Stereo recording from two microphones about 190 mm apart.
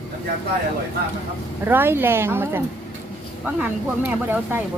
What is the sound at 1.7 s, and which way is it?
A woman's voice, 10° right (ahead or behind).